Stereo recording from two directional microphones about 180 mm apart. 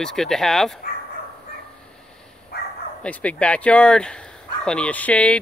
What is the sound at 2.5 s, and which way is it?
Bow-wow, 60° left (ahead or behind).